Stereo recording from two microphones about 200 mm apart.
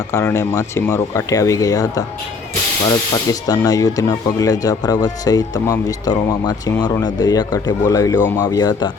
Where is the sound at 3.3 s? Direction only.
20° left (ahead or behind).